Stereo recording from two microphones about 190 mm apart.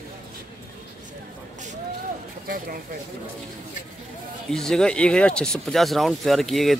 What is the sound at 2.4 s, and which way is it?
Speech, 50° right (ahead or behind).